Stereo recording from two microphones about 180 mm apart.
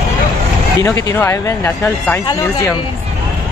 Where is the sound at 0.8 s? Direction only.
15° left (ahead or behind).